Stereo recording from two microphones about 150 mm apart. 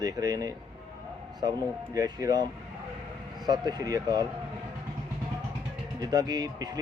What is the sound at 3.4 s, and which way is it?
Speech, 30° right (ahead or behind).